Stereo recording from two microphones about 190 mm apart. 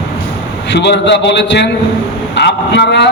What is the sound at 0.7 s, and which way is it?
A man's voice, 65° left (ahead or behind).